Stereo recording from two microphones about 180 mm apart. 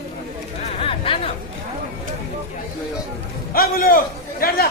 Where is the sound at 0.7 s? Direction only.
30° left (ahead or behind).